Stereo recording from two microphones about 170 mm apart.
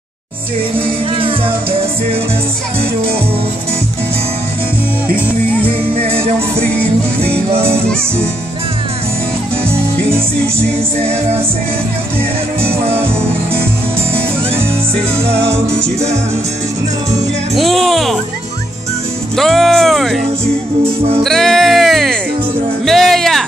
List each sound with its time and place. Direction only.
0.7 s music: 35° right (ahead or behind)
7.2 s music: 35° right (ahead or behind)
15.5 s music: 40° right (ahead or behind)
17.6 s speech: centre (ahead or behind)
19.3 s speech: centre (ahead or behind)
21.2 s music: centre (ahead or behind)
22.8 s a sound: centre (ahead or behind)